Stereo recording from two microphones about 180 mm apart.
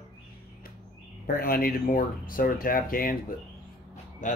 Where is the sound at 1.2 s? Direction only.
55° left (ahead or behind).